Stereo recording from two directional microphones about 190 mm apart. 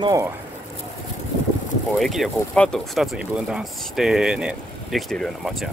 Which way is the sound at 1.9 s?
Centre (ahead or behind).